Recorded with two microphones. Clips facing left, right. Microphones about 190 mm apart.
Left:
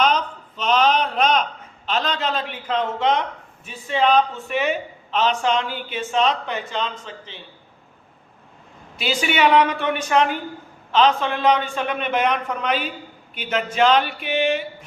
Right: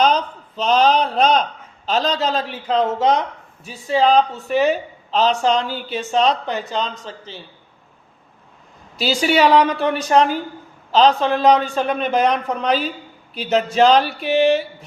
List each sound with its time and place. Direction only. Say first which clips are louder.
0.0 s a man's voice: right 3 dB; 35° right (ahead or behind)
9.0 s a man's voice: right 4 dB; 35° right (ahead or behind)